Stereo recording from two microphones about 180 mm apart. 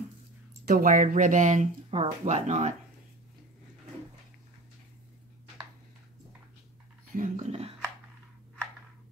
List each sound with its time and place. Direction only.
0.7 s speech: 45° right (ahead or behind)
7.2 s speech: 40° right (ahead or behind)